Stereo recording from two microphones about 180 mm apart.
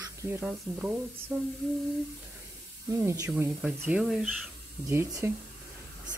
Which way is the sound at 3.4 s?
10° right (ahead or behind).